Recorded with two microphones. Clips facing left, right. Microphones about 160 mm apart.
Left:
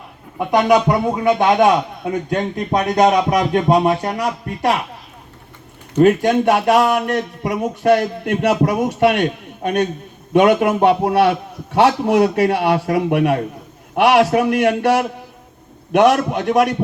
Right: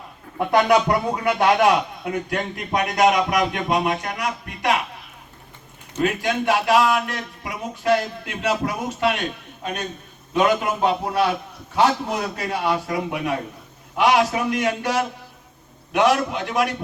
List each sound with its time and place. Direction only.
0.3 s a man's voice: 15° left (ahead or behind); by 4.7 s 35° left (ahead or behind)
6.0 s a man's voice: 45° left (ahead or behind)